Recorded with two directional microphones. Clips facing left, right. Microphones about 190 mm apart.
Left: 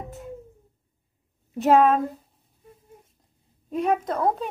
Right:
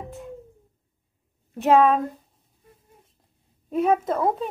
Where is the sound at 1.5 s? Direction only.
Centre (ahead or behind).